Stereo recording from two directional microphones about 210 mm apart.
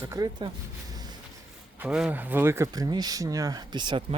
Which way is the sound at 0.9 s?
20° right (ahead or behind).